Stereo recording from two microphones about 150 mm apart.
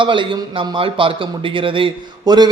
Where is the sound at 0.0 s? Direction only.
35° right (ahead or behind).